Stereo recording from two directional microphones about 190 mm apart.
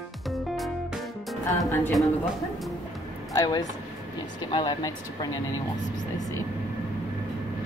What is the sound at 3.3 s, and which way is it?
Speech, 20° left (ahead or behind).